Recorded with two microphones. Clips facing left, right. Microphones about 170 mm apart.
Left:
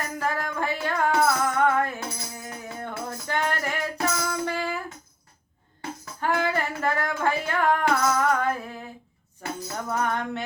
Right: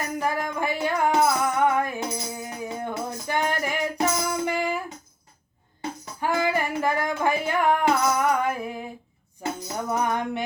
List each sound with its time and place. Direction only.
0.2 s music: 15° right (ahead or behind)
6.1 s female singing: 15° right (ahead or behind)
9.4 s music: 20° right (ahead or behind)